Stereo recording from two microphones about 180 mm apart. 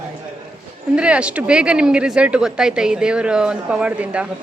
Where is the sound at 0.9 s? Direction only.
5° right (ahead or behind).